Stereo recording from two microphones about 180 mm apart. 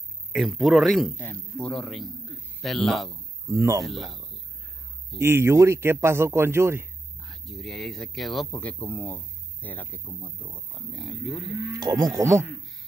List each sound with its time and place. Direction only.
0.3 s speech: centre (ahead or behind)
3.4 s speech: 15° right (ahead or behind)
3.8 s speech: centre (ahead or behind)
5.2 s speech: 15° right (ahead or behind)
7.2 s speech: centre (ahead or behind)
11.8 s speech: 20° right (ahead or behind)